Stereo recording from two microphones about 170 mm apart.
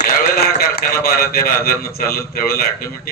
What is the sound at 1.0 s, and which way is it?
A man's voice, 65° left (ahead or behind).